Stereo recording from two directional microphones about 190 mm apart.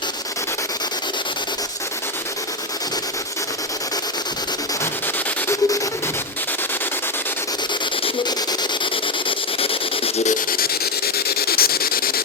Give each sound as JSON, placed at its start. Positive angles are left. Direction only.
{"t": 5.5, "sound": "music", "side_deg": 15}
{"t": 9.6, "sound": "rub", "side_deg": 30}
{"t": 10.5, "sound": "a sound", "side_deg": 55}